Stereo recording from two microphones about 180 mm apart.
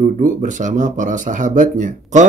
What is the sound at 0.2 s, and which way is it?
Speech, 45° right (ahead or behind).